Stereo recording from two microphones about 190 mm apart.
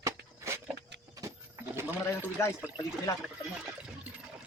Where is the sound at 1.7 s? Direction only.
15° right (ahead or behind).